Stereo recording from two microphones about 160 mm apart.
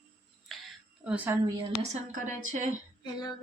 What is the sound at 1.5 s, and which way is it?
Speech, 40° right (ahead or behind).